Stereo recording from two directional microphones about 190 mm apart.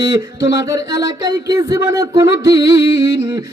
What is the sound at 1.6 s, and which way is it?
Speech, 20° right (ahead or behind).